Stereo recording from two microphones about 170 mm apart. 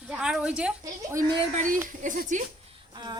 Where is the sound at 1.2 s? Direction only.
50° right (ahead or behind).